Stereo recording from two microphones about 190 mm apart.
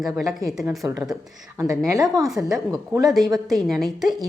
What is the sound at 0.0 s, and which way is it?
Speech, centre (ahead or behind).